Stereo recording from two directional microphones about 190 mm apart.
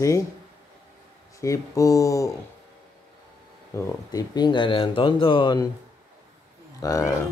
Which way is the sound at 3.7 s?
20° left (ahead or behind).